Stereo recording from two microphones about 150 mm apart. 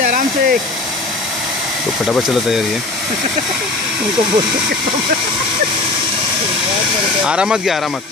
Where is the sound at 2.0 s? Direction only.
Centre (ahead or behind).